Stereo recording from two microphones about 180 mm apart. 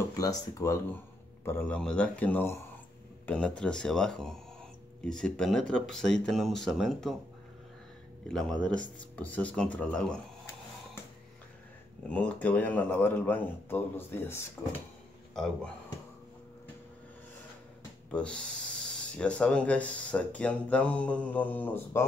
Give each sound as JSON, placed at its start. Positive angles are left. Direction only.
{"t": 0.1, "sound": "speech", "side_deg": 20}
{"t": 8.3, "sound": "speech", "side_deg": 0}
{"t": 12.1, "sound": "speech", "side_deg": 10}
{"t": 18.1, "sound": "speech", "side_deg": 5}